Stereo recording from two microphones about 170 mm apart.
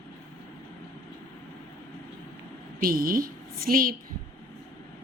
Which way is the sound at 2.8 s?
55° right (ahead or behind).